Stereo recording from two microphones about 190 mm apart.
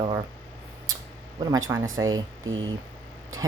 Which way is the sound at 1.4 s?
15° right (ahead or behind).